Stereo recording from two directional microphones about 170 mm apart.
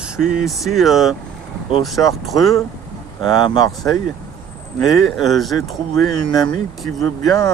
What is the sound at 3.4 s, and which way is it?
Speech, 25° left (ahead or behind).